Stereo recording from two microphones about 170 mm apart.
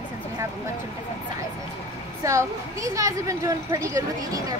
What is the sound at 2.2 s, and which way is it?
Speech, 20° right (ahead or behind).